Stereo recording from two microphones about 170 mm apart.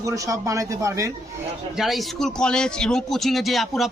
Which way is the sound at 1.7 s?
Centre (ahead or behind).